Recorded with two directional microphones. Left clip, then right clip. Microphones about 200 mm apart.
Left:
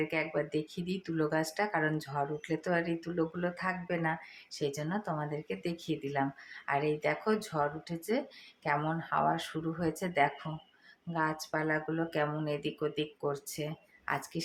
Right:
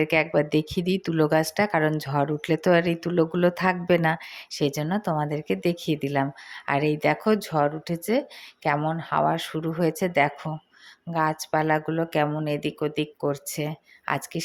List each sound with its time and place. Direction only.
0.0 s speech: 45° right (ahead or behind)